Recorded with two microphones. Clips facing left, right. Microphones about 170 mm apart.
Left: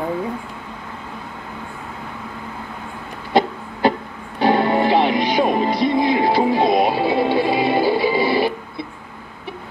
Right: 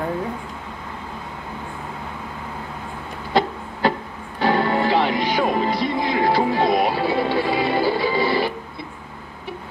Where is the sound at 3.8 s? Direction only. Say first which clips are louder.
Left 3 dB; 15° left (ahead or behind).